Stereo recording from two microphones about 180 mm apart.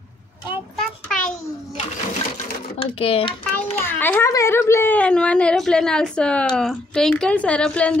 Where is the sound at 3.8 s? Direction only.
10° left (ahead or behind).